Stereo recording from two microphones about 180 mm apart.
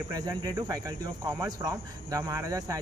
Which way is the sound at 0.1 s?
20° right (ahead or behind).